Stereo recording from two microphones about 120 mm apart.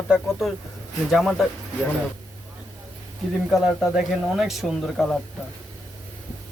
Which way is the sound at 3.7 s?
5° right (ahead or behind).